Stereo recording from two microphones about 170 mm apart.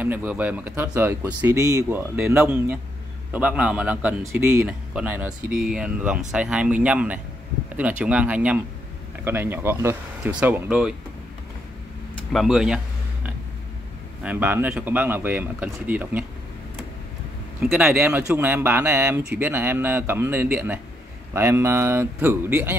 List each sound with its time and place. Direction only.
0.0 s speech: 10° right (ahead or behind)
12.2 s a sound: 5° left (ahead or behind)
12.4 s speech: 5° right (ahead or behind)
17.6 s speech: 5° right (ahead or behind)